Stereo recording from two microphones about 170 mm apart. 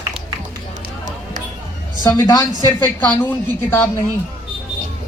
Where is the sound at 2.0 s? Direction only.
15° left (ahead or behind).